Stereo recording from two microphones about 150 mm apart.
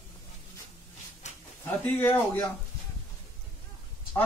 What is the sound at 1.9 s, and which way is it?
Speech, 15° left (ahead or behind).